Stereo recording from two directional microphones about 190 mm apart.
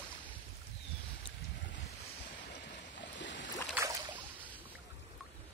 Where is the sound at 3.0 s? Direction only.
70° left (ahead or behind).